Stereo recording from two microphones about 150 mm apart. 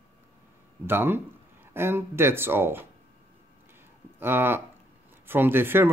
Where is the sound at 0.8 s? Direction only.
15° right (ahead or behind).